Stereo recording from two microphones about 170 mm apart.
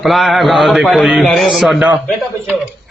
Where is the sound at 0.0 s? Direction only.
Centre (ahead or behind).